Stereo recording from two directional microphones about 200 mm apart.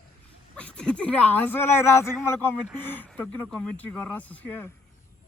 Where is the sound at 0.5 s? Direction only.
5° left (ahead or behind).